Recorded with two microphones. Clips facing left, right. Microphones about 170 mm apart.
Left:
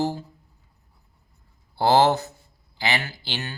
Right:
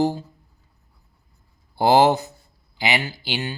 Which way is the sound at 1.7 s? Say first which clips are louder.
Right 2 dB; 15° right (ahead or behind).